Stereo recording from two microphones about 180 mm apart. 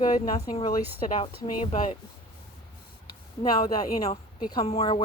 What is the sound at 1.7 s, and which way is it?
Speech, 45° left (ahead or behind).